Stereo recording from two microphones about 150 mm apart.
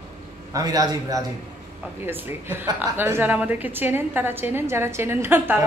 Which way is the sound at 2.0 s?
15° right (ahead or behind).